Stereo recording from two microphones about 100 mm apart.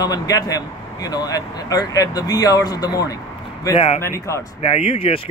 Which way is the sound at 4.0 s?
30° left (ahead or behind).